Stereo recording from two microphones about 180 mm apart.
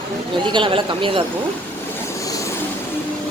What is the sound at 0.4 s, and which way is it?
Speech, 25° right (ahead or behind).